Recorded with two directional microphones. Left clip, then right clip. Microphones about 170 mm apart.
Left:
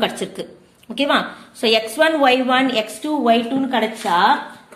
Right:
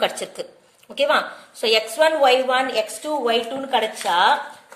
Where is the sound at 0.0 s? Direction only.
25° right (ahead or behind).